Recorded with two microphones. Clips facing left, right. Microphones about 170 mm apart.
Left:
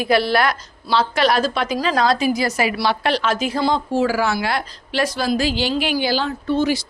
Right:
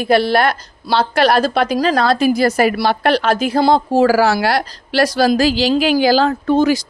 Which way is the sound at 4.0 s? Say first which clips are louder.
Right 7 dB; 90° right.